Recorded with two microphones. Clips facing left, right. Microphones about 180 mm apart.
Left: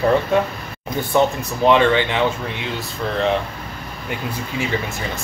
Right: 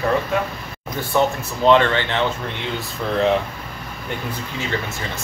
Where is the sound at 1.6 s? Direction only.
15° left (ahead or behind).